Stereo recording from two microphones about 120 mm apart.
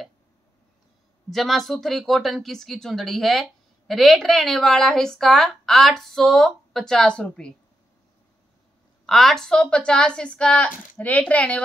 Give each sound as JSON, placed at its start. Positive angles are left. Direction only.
{"t": 1.3, "sound": "speech", "side_deg": 0}
{"t": 9.0, "sound": "a woman's voice", "side_deg": 0}